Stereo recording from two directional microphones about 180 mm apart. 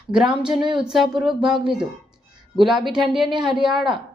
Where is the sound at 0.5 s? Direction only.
25° right (ahead or behind).